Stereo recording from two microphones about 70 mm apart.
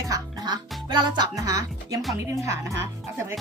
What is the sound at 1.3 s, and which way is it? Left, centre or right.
Speech, right.